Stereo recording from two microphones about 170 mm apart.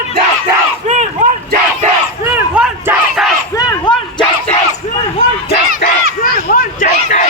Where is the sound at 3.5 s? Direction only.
25° left (ahead or behind).